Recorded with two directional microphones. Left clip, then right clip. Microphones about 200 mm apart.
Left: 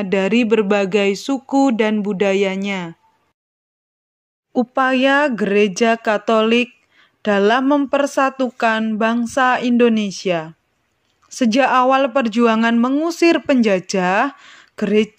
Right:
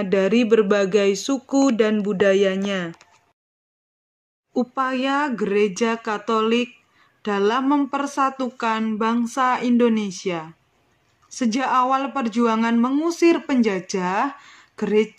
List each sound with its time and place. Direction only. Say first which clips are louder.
0.0 s speech: left 2 dB; 25° left (ahead or behind)
4.6 s speech: left 6 dB; 40° left (ahead or behind)